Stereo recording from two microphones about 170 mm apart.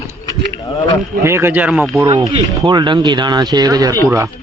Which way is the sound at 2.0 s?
25° right (ahead or behind).